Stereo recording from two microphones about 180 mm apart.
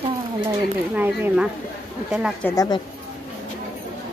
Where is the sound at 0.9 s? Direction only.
10° right (ahead or behind).